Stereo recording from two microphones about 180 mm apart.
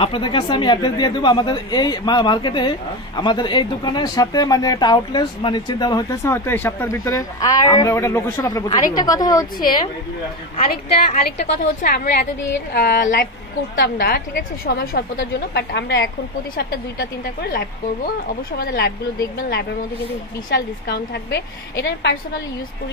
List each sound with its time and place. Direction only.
0.0 s speech: 30° left (ahead or behind)
11.3 s a woman's voice: 50° left (ahead or behind)
20.4 s a woman's voice: 60° left (ahead or behind)